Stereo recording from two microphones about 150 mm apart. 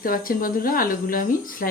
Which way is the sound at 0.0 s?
75° left (ahead or behind).